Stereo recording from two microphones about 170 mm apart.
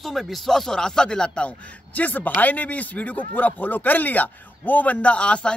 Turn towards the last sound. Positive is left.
turn(degrees=5)  # may be behind; listen again after turning